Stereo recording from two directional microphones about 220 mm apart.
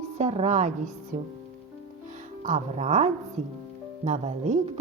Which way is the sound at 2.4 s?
35° right (ahead or behind).